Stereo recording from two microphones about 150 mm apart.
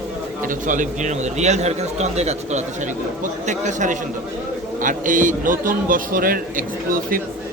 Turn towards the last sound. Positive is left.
turn(degrees=-70)  # may be behind; listen again after turning